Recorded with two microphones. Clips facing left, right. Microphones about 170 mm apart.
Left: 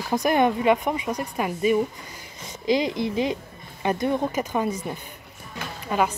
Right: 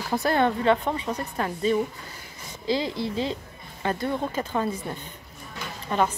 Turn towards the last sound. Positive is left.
turn(degrees=10)  # may be behind; listen again after turning